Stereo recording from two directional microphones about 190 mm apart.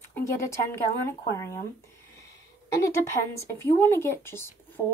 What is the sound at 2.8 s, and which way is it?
Speech, 15° left (ahead or behind).